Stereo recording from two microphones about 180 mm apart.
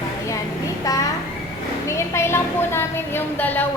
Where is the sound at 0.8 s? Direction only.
20° left (ahead or behind).